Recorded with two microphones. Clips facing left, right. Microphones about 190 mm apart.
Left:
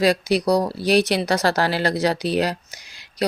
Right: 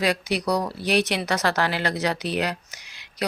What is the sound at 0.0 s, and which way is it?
A woman's voice, 35° left (ahead or behind).